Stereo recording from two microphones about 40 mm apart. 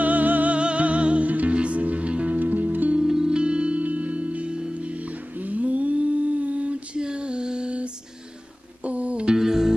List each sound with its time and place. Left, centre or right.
0.0 s music: right
0.6 s music: right
2.3 s music: right
3.0 s music: centre; by 7.0 s right
7.0 s female singing: right
8.8 s music: right
9.4 s music: centre